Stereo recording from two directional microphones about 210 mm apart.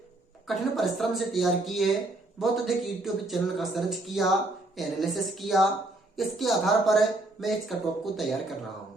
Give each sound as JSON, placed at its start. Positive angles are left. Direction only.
{"t": 0.4, "sound": "speech", "side_deg": 0}